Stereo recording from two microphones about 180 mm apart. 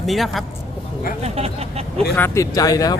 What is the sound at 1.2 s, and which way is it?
Speech, 35° right (ahead or behind).